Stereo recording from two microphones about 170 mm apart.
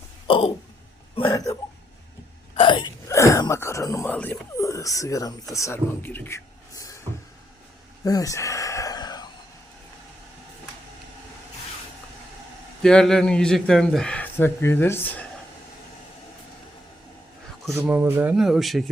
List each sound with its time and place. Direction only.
0.3 s a sound: 30° left (ahead or behind)
1.3 s speech: 20° left (ahead or behind)
2.6 s speech: 25° left (ahead or behind)
8.0 s a sound: 20° left (ahead or behind)
12.8 s a man's voice: 5° left (ahead or behind)
17.7 s a man's voice: 10° right (ahead or behind)